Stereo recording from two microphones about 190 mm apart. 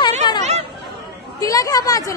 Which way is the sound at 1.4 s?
20° left (ahead or behind).